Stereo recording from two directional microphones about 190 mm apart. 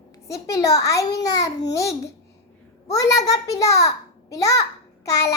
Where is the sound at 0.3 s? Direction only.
15° left (ahead or behind).